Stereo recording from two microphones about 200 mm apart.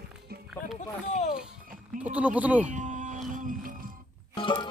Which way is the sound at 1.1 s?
35° left (ahead or behind).